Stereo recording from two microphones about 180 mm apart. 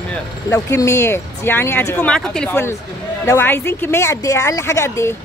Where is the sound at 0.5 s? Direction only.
15° left (ahead or behind).